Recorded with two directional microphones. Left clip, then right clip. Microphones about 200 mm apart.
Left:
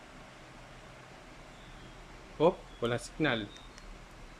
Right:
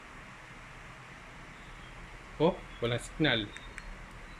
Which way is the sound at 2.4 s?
5° left (ahead or behind).